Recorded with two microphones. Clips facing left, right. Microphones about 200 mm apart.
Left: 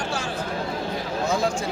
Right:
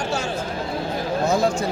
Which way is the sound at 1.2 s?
40° right (ahead or behind).